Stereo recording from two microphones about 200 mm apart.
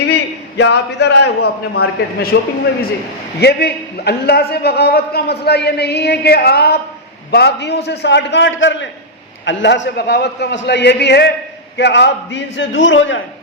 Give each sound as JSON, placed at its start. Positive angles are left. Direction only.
{"t": 0.0, "sound": "a man's voice", "side_deg": 55}
{"t": 3.4, "sound": "a man's voice", "side_deg": 55}